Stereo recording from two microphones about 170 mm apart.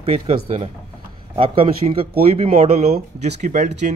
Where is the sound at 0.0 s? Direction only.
35° right (ahead or behind).